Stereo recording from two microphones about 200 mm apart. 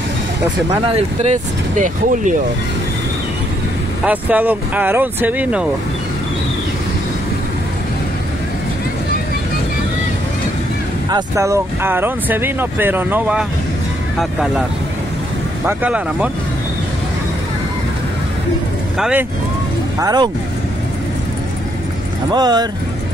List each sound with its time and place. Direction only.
0.8 s speech: 35° right (ahead or behind)
4.0 s speech: 5° right (ahead or behind)
11.1 s speech: 15° right (ahead or behind)
15.6 s speech: 5° right (ahead or behind)
18.9 s speech: 5° right (ahead or behind)
20.0 s speech: 20° right (ahead or behind)
22.3 s speech: 20° right (ahead or behind)